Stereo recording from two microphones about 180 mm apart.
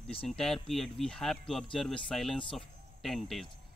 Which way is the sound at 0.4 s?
Centre (ahead or behind).